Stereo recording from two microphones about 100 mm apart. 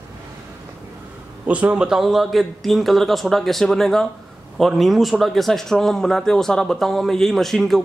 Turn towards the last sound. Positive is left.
turn(degrees=5)  # may be behind; listen again after turning